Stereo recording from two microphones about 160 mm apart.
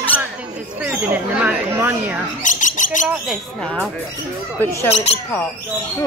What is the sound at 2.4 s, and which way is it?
Bird, 55° left (ahead or behind).